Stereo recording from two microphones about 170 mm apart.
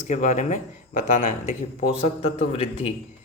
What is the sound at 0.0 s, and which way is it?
A man's voice, 45° left (ahead or behind).